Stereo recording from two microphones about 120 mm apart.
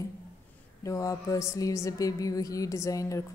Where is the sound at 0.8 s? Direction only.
25° left (ahead or behind).